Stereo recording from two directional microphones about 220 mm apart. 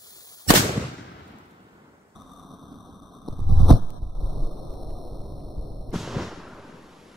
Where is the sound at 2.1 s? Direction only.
Centre (ahead or behind).